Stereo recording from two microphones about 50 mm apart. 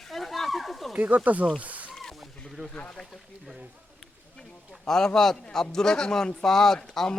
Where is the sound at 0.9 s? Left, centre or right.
Right.